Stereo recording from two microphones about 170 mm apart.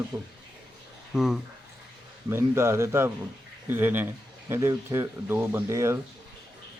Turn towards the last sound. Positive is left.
turn(degrees=-15)  # may be behind; listen again after turning